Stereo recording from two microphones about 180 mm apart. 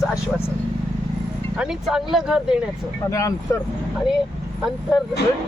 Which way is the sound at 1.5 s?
5° right (ahead or behind).